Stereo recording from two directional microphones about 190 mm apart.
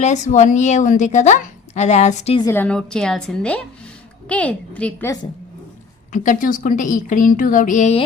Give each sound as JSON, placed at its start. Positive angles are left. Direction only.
{"t": 0.0, "sound": "a woman's voice", "side_deg": 40}
{"t": 2.4, "sound": "a woman's voice", "side_deg": 10}
{"t": 6.1, "sound": "a woman's voice", "side_deg": 45}